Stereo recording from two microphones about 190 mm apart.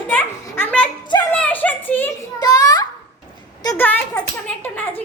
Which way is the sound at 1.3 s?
10° left (ahead or behind).